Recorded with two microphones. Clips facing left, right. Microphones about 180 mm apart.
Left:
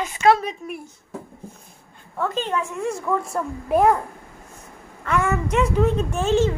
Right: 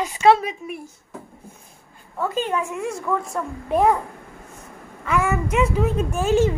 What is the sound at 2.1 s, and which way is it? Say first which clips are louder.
Speech: right 1 dB; 5° right (ahead or behind).